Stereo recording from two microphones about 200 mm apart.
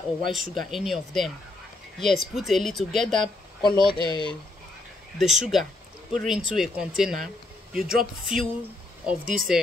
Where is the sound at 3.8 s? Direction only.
20° left (ahead or behind).